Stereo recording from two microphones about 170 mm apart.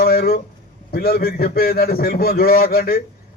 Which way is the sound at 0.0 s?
60° left (ahead or behind).